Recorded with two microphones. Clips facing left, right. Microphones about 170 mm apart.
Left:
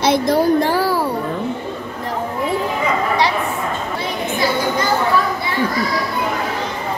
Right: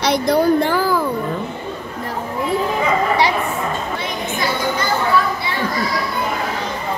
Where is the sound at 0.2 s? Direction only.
45° left (ahead or behind).